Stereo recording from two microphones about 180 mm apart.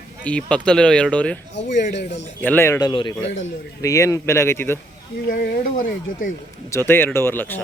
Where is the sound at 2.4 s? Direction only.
10° left (ahead or behind).